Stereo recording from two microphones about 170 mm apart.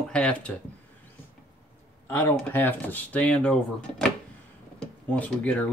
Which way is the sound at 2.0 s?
15° left (ahead or behind).